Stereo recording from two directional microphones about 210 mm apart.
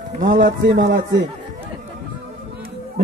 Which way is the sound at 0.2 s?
50° right (ahead or behind).